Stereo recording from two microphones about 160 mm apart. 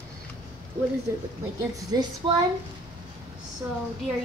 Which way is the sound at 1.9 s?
25° right (ahead or behind).